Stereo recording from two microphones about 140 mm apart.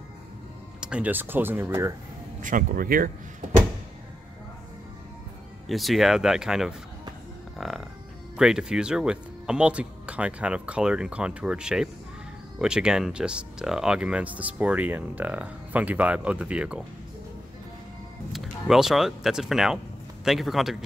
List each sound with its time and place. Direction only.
0.7 s speech: 5° right (ahead or behind)
2.4 s speech: 70° right (ahead or behind); by 3.1 s 85° right
5.7 s speech: centre (ahead or behind)
7.5 s music: centre (ahead or behind)
8.4 s speech: 5° right (ahead or behind)
18.3 s speech: centre (ahead or behind)